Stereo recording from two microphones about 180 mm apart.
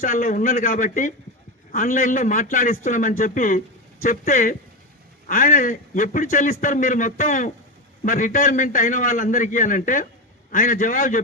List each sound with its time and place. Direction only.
0.0 s a man's voice: 50° left (ahead or behind)